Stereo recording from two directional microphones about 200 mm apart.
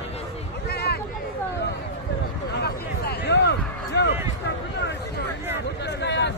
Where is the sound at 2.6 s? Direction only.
55° left (ahead or behind).